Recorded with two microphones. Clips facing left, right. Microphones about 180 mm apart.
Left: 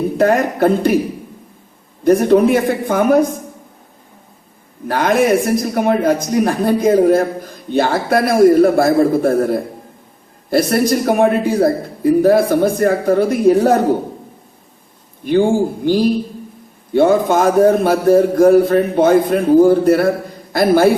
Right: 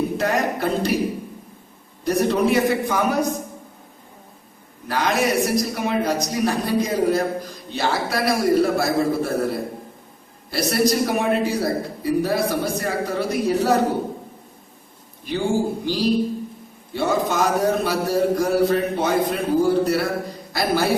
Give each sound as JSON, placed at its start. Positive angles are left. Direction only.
{"t": 0.2, "sound": "a man's voice", "side_deg": 55}
{"t": 2.0, "sound": "a man's voice", "side_deg": 50}
{"t": 4.9, "sound": "a man's voice", "side_deg": 55}
{"t": 15.2, "sound": "a man's voice", "side_deg": 55}